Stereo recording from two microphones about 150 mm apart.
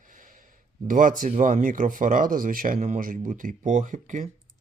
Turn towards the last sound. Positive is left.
turn(degrees=-60)  # may be behind; listen again after turning